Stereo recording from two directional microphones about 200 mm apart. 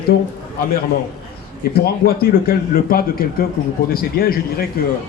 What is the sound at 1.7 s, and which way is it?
Speech, 50° left (ahead or behind).